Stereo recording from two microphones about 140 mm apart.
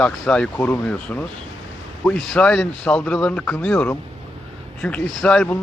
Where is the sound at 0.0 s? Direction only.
5° left (ahead or behind).